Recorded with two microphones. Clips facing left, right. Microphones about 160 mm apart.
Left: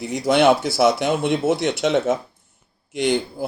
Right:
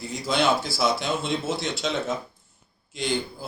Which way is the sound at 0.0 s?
70° left (ahead or behind).